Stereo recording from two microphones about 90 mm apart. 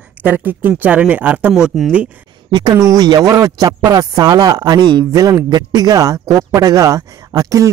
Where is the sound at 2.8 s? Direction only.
40° right (ahead or behind).